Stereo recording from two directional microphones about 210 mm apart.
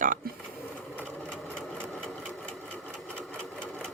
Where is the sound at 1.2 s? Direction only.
5° left (ahead or behind).